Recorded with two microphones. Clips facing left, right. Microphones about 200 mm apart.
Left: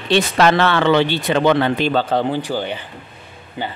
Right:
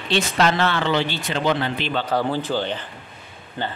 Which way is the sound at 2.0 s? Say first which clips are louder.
Left 3 dB; 20° left (ahead or behind).